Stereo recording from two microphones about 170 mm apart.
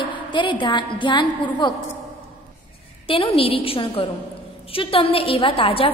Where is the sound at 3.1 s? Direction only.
35° left (ahead or behind).